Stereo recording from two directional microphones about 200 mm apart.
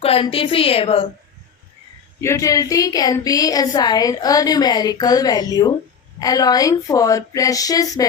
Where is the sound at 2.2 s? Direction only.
15° left (ahead or behind).